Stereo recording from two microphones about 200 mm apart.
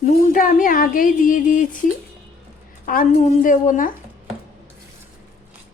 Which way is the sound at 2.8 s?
45° left (ahead or behind).